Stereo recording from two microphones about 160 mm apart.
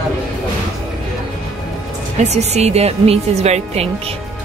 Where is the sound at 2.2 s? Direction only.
45° right (ahead or behind).